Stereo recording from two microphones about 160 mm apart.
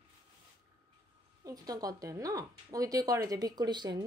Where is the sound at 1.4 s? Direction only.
25° right (ahead or behind).